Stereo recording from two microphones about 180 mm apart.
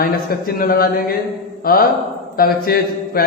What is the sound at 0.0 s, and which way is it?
A man's voice, 55° left (ahead or behind).